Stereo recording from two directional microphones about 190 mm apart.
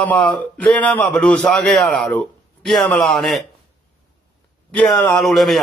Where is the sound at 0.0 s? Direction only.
10° left (ahead or behind).